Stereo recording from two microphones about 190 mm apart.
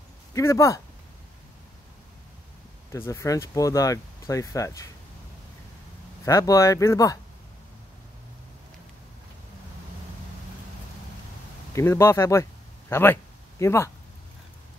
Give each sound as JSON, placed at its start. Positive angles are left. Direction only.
{"t": 0.3, "sound": "speech", "side_deg": 15}
{"t": 2.9, "sound": "speech", "side_deg": 15}
{"t": 6.2, "sound": "speech", "side_deg": 15}
{"t": 11.7, "sound": "speech", "side_deg": 15}